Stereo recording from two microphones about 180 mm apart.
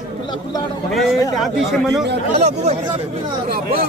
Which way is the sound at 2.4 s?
40° right (ahead or behind).